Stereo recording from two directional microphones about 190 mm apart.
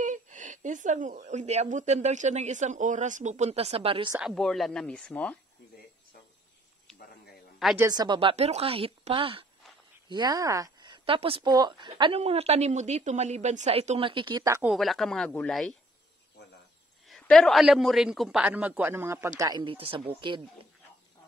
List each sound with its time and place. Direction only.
0.0 s speech: 40° right (ahead or behind)
4.2 s speech: centre (ahead or behind)
6.9 s a sound: 5° left (ahead or behind)
7.5 s speech: centre (ahead or behind)
7.8 s speech: 20° right (ahead or behind)
14.7 s speech: centre (ahead or behind)
17.1 s a man's voice: centre (ahead or behind); by 20.4 s 25° right (ahead or behind)